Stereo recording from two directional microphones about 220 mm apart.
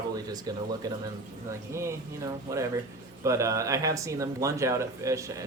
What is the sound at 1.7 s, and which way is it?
Speech, 10° right (ahead or behind).